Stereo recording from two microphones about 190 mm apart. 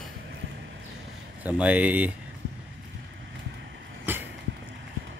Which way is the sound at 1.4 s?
5° right (ahead or behind).